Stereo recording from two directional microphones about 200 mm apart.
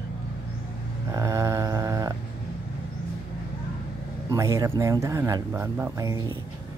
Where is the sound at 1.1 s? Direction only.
15° right (ahead or behind).